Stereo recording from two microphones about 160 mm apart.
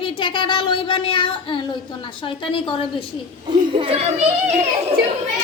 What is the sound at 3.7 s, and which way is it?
Speech, 35° right (ahead or behind).